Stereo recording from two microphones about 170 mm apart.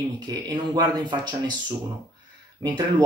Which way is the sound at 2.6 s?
25° right (ahead or behind).